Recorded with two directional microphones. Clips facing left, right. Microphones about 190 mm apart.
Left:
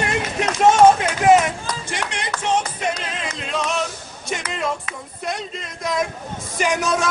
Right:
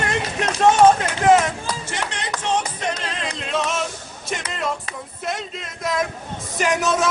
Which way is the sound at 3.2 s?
Centre (ahead or behind).